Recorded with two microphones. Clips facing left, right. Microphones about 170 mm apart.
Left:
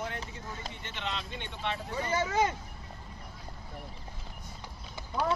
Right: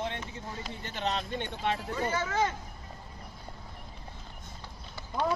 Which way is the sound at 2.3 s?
15° left (ahead or behind).